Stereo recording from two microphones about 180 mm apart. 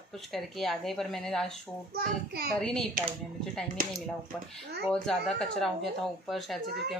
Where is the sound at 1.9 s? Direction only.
60° right (ahead or behind).